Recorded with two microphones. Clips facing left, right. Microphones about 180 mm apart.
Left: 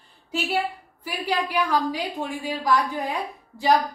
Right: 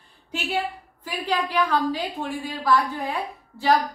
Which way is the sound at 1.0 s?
10° left (ahead or behind).